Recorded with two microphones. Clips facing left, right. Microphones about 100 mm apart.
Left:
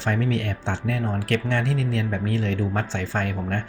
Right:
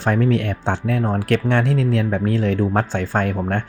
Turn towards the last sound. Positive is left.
turn(degrees=-50)  # may be behind; listen again after turning